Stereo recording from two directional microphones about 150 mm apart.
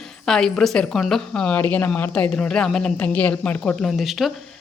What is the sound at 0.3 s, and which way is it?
Speech, 5° left (ahead or behind).